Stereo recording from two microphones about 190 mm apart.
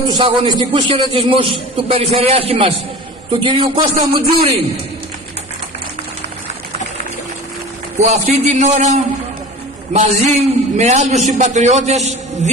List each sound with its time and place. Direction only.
0.1 s a man's voice: 25° right (ahead or behind)
8.0 s a man's voice: 40° right (ahead or behind)